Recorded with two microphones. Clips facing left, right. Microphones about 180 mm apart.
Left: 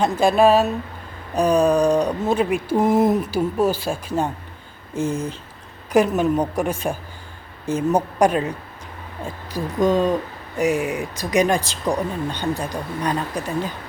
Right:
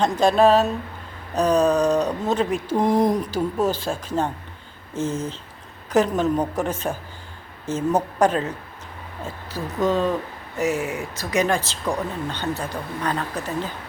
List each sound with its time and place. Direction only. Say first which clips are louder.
0.0 s speech: left 1 dB; 10° left (ahead or behind)